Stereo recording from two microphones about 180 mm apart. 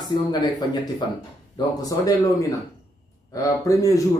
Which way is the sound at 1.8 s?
20° left (ahead or behind).